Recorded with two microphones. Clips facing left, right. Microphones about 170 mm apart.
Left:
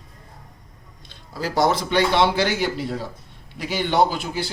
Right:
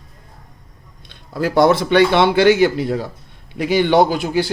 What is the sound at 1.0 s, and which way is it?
Speech, 60° right (ahead or behind).